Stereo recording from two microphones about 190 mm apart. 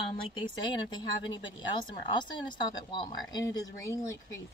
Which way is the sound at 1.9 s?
25° left (ahead or behind).